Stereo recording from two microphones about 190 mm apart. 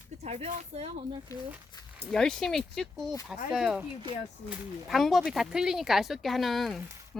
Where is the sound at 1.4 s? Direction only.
10° right (ahead or behind).